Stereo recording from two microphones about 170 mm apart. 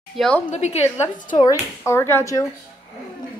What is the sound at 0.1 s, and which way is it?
Speech, centre (ahead or behind).